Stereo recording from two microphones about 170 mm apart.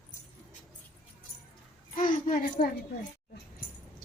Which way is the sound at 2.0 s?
50° left (ahead or behind).